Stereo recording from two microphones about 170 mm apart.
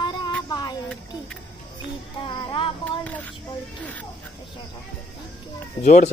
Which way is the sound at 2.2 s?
30° left (ahead or behind).